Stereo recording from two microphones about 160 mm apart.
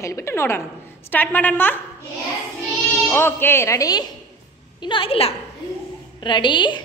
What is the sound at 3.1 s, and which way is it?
A woman's voice, 15° left (ahead or behind).